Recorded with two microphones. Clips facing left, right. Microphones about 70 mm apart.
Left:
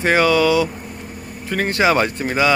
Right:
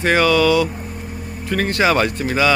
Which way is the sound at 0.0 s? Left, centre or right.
Centre.